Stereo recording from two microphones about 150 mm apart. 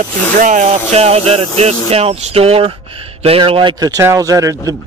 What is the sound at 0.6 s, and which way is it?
Speech, 45° right (ahead or behind).